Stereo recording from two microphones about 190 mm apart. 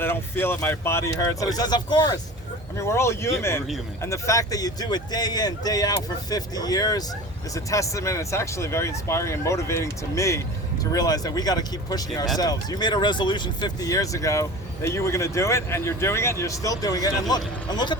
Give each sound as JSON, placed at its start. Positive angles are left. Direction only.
{"t": 0.0, "sound": "speech", "side_deg": 10}